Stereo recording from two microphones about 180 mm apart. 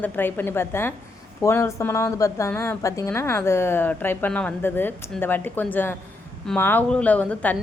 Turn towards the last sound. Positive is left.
turn(degrees=10)  # may be behind; listen again after turning